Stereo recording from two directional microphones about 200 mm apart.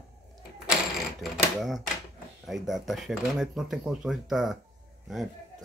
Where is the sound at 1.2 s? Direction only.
Centre (ahead or behind).